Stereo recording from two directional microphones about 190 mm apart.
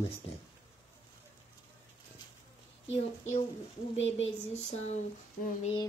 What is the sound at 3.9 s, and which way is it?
Speech, 80° left.